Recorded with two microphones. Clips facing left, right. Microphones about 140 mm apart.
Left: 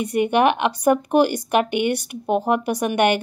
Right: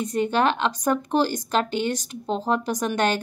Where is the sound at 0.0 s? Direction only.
10° left (ahead or behind).